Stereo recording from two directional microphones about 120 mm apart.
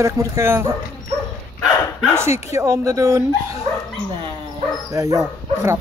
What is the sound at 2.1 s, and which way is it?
Speech, 20° right (ahead or behind).